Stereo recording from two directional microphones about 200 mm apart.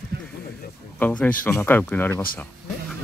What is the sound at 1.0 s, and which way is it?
Speech, 5° left (ahead or behind).